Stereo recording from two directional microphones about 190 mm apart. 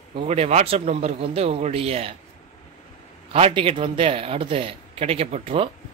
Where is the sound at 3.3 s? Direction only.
30° right (ahead or behind).